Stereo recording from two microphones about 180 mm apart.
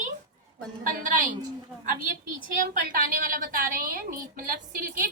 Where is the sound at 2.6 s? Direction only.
50° right (ahead or behind).